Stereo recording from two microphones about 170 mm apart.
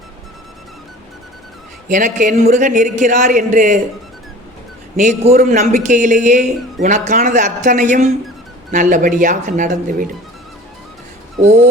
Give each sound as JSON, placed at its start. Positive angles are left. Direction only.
{"t": 1.9, "sound": "speech", "side_deg": -50}
{"t": 4.9, "sound": "speech", "side_deg": -45}